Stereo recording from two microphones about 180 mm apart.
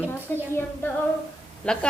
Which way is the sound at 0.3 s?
10° left (ahead or behind).